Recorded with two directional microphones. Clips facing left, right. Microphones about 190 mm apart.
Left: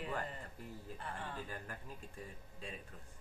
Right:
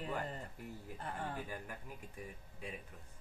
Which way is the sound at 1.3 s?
10° right (ahead or behind).